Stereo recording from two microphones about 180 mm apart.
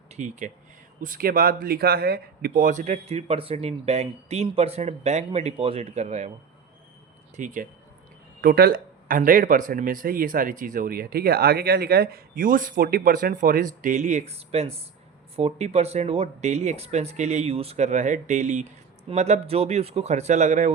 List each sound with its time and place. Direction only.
0.1 s speech: 45° right (ahead or behind)
7.3 s speech: 45° right (ahead or behind)
8.4 s speech: 60° right (ahead or behind)